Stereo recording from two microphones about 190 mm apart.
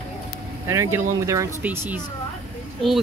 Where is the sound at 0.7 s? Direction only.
15° right (ahead or behind).